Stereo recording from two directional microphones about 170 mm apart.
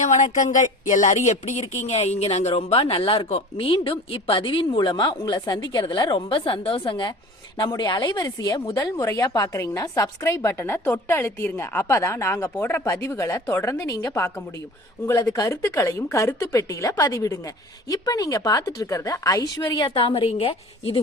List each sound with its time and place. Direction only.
0.0 s speech: 45° left (ahead or behind)